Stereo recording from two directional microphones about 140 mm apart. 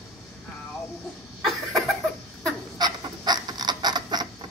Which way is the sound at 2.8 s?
30° right (ahead or behind).